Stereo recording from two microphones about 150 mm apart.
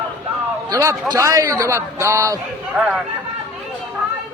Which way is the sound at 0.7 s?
20° right (ahead or behind).